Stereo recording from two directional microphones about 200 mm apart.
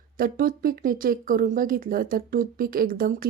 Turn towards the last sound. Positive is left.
turn(degrees=-45)  # may be behind; listen again after turning